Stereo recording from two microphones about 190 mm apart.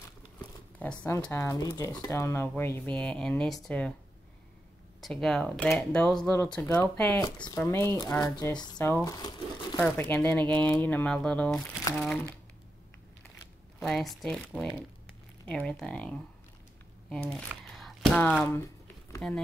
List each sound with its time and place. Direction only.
0.7 s speech: 10° left (ahead or behind)
5.0 s speech: centre (ahead or behind)
13.7 s speech: centre (ahead or behind)
17.1 s crumpling: 5° left (ahead or behind)
19.2 s speech: 5° left (ahead or behind)